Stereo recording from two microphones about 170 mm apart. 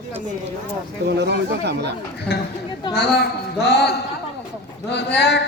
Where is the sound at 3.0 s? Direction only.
70° left (ahead or behind).